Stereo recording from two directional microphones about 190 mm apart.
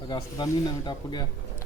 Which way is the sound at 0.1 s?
20° left (ahead or behind).